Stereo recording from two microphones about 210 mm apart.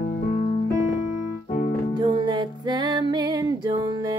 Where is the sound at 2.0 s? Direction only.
20° right (ahead or behind).